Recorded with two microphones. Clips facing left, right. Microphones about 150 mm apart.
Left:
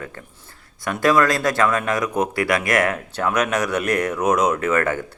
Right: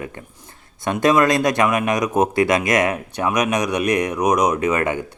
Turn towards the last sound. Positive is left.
turn(degrees=-15)  # may be behind; listen again after turning